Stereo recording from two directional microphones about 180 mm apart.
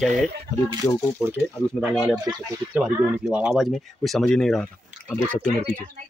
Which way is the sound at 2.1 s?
25° right (ahead or behind).